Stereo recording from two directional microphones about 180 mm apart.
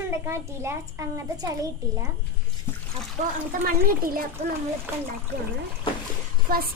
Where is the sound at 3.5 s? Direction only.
50° right (ahead or behind).